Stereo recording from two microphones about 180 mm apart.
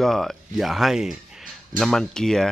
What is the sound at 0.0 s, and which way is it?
Speech, centre (ahead or behind).